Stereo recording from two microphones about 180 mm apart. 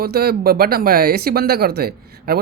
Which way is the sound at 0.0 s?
60° right (ahead or behind).